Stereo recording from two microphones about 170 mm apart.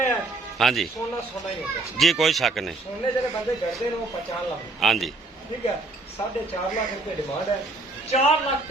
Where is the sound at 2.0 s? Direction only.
Centre (ahead or behind).